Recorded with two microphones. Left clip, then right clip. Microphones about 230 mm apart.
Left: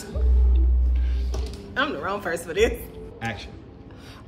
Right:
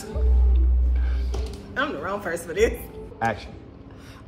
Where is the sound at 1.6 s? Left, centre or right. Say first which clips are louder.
Left 1 dB; centre.